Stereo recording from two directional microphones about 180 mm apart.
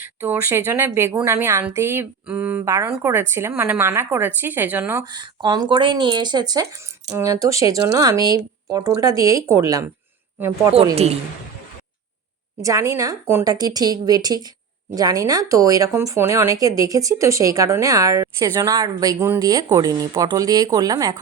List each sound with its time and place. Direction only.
0.0 s a woman's voice: 10° right (ahead or behind)
10.9 s a woman's voice: 35° right (ahead or behind)
12.6 s speech: 15° right (ahead or behind)